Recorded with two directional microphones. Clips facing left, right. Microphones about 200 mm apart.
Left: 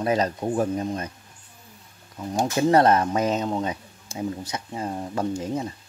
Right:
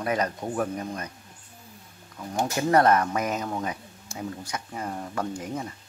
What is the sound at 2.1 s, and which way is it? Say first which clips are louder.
Speech: left 4 dB; 25° left (ahead or behind).